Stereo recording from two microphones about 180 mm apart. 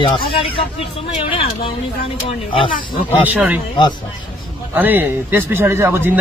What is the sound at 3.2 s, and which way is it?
Speech, 10° right (ahead or behind).